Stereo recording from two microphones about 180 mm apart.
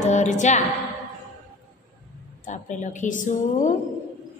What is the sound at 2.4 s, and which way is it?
A woman's voice, 45° left (ahead or behind).